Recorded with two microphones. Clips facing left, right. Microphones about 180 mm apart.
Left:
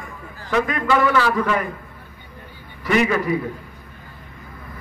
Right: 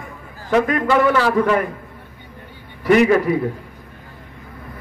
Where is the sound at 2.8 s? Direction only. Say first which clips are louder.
Right 6 dB; 55° right (ahead or behind).